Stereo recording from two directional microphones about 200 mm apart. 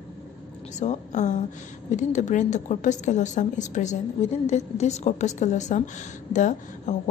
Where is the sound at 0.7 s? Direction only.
35° left (ahead or behind).